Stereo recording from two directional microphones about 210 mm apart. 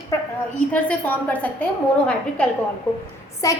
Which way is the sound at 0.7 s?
5° left (ahead or behind).